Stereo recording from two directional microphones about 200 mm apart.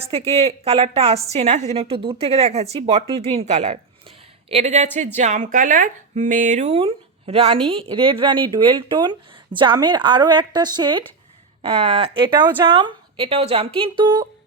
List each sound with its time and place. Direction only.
0.0 s a woman's voice: 30° right (ahead or behind)